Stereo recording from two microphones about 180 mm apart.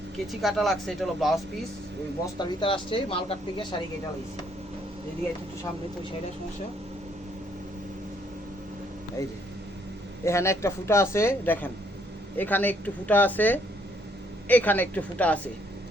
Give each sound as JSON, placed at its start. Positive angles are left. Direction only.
{"t": 0.3, "sound": "speech", "side_deg": 0}
{"t": 2.2, "sound": "speech", "side_deg": 25}
{"t": 10.2, "sound": "a man's voice", "side_deg": 15}